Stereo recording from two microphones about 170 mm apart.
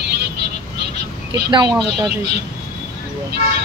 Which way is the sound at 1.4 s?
25° right (ahead or behind).